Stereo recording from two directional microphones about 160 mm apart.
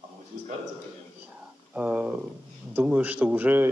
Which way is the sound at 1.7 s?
10° right (ahead or behind).